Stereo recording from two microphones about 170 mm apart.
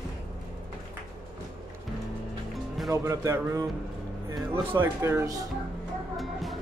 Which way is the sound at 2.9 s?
20° right (ahead or behind).